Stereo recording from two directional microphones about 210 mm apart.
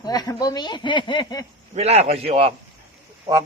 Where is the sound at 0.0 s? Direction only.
20° left (ahead or behind).